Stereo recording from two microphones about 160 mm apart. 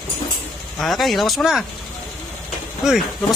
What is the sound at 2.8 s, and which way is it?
Speech, centre (ahead or behind).